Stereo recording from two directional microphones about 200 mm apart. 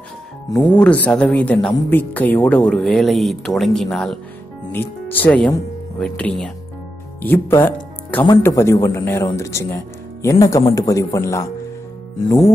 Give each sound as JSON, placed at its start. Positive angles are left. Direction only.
{"t": 0.5, "sound": "speech", "side_deg": 10}